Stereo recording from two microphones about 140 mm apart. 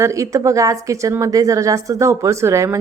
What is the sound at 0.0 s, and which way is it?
A woman's voice, 20° right (ahead or behind).